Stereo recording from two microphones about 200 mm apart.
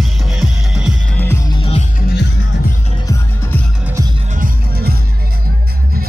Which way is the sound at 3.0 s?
15° left (ahead or behind).